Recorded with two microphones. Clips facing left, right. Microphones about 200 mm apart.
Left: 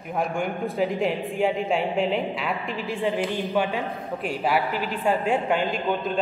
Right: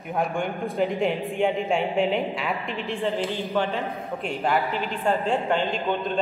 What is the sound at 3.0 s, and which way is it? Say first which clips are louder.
A man's voice: left 2 dB; 15° left (ahead or behind).